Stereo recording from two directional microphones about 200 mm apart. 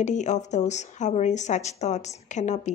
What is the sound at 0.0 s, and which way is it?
Speech, 35° left (ahead or behind).